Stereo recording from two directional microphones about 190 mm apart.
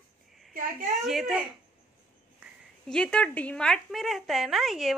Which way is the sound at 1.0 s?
Centre (ahead or behind).